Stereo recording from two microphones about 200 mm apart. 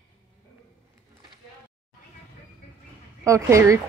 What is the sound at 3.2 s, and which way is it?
Speech, 15° right (ahead or behind).